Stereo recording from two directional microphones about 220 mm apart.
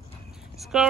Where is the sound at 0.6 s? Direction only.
Centre (ahead or behind).